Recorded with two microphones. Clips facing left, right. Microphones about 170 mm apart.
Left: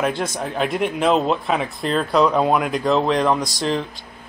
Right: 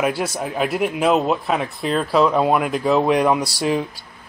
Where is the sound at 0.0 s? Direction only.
5° right (ahead or behind).